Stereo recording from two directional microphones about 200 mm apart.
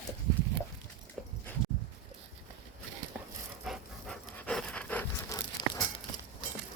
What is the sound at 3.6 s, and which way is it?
Pant, 5° left (ahead or behind).